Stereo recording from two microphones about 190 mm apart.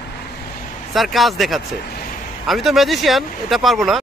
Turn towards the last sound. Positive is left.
turn(degrees=0)  # may be behind; listen again after turning